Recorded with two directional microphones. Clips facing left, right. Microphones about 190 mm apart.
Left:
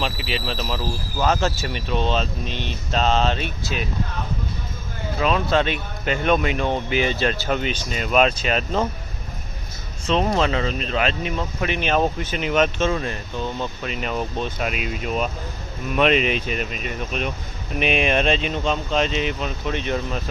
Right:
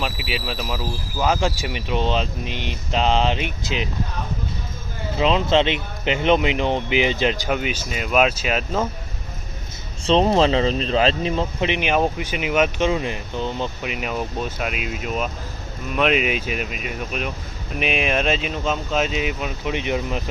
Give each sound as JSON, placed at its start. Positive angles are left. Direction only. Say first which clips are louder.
{"t": 0.0, "sound": "speech", "louder": "left 1 dB", "side_deg": -5}
{"t": 5.1, "sound": "speech", "louder": "right 2 dB", "side_deg": -20}
{"t": 10.1, "sound": "speech", "louder": "right 4 dB", "side_deg": -30}
{"t": 11.7, "sound": "speech", "louder": "left 1 dB", "side_deg": -15}